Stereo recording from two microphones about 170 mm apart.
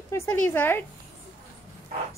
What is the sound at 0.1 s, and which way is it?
Speech, 15° left (ahead or behind).